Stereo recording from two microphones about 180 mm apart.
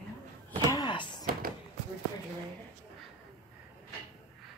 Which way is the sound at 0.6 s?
20° left (ahead or behind).